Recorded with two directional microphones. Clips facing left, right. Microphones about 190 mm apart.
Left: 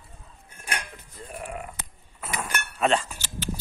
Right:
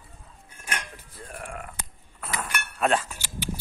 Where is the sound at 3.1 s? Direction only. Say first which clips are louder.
Even; 15° right (ahead or behind).